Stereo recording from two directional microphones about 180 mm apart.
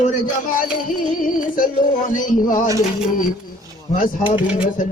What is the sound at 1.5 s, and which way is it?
A man's voice, 50° left (ahead or behind).